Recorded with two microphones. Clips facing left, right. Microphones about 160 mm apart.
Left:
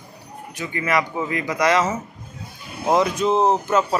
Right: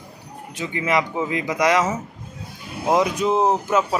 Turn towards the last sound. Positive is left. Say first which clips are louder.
# left 1 dB
turn(degrees=-10)  # may be behind; listen again after turning